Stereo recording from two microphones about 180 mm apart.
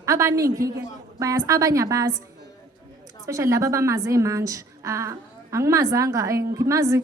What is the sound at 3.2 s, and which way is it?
Speech, 15° right (ahead or behind).